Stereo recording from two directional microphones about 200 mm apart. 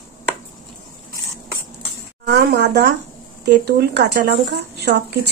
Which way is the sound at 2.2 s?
55° right (ahead or behind).